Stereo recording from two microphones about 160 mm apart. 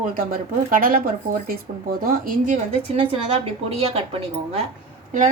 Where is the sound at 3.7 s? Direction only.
40° right (ahead or behind).